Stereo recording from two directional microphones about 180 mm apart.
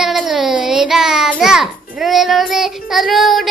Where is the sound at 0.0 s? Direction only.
Centre (ahead or behind).